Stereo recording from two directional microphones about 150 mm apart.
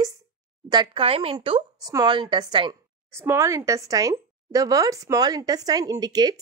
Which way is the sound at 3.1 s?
15° right (ahead or behind).